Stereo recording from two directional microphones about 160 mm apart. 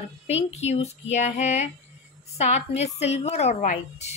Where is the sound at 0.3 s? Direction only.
45° left (ahead or behind).